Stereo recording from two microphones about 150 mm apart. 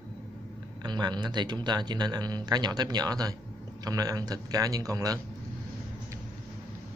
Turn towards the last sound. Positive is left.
turn(degrees=-25)  # may be behind; listen again after turning